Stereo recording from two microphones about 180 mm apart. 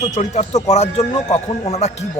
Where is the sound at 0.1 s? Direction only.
40° left (ahead or behind).